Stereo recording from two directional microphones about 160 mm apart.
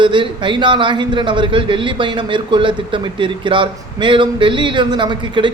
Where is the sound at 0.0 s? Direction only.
30° right (ahead or behind).